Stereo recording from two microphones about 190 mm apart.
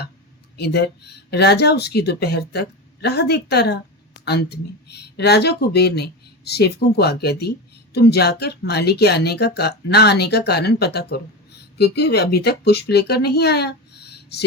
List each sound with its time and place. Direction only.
0.5 s speech: 60° left (ahead or behind)